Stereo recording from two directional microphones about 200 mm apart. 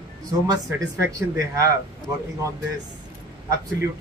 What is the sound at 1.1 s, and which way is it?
Speech, 15° right (ahead or behind).